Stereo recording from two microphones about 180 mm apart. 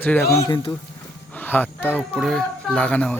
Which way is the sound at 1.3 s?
10° left (ahead or behind).